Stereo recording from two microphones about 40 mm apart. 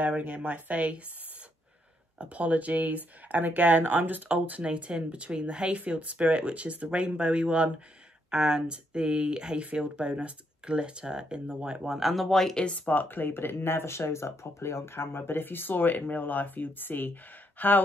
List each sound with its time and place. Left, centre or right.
0.0 s speech: right
2.1 s speech: right
4.6 s speech: right
5.8 s speech: right
11.8 s speech: centre
12.3 s speech: centre
12.5 s speech: left
12.9 s speech: left